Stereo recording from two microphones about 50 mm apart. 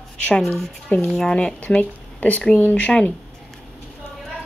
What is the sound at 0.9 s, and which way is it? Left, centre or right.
Speech, left.